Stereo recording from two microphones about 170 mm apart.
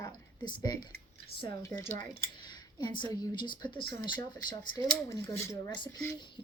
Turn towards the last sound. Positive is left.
turn(degrees=30)  # may be behind; listen again after turning